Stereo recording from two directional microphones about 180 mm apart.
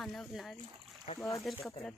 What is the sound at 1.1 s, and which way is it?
Speech, 35° left (ahead or behind).